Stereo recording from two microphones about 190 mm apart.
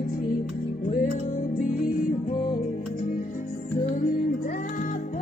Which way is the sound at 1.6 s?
45° left (ahead or behind).